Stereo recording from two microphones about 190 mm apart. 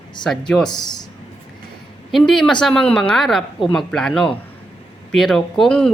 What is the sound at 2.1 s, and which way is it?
A woman's voice, centre (ahead or behind).